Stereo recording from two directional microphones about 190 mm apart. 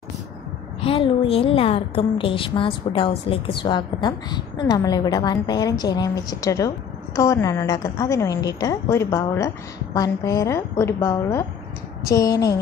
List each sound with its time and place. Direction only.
0.7 s a woman's voice: 30° left (ahead or behind)